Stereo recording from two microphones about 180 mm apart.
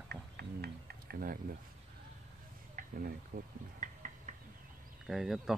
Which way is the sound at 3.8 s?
45° right (ahead or behind).